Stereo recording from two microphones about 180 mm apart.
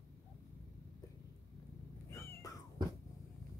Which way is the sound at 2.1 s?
15° left (ahead or behind).